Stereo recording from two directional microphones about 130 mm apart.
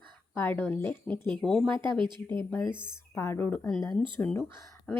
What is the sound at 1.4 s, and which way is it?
Speech, centre (ahead or behind).